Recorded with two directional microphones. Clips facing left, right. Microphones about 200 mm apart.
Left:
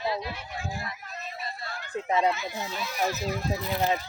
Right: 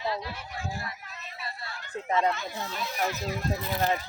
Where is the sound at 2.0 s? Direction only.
10° left (ahead or behind).